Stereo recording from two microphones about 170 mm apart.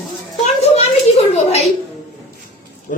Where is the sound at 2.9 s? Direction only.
50° left (ahead or behind).